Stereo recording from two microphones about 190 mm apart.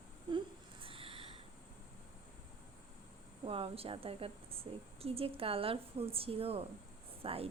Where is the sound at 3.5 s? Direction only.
30° right (ahead or behind).